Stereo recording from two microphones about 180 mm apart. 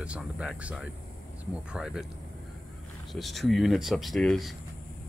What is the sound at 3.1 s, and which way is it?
Speech, centre (ahead or behind).